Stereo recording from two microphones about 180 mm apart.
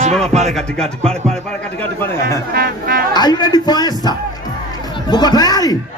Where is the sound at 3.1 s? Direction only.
25° left (ahead or behind).